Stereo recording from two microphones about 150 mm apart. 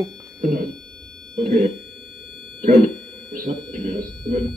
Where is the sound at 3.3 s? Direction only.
70° right (ahead or behind).